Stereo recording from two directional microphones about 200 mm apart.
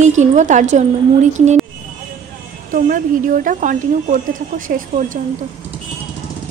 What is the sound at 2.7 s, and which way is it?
A woman's voice, 40° right (ahead or behind).